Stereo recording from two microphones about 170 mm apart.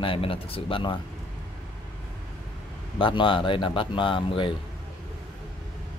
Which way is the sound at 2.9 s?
30° left (ahead or behind).